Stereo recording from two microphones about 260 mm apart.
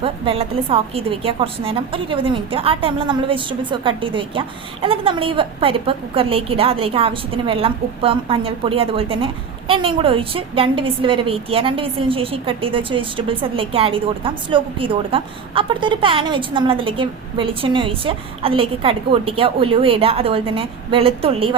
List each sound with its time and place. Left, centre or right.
0.0 s a woman's voice: right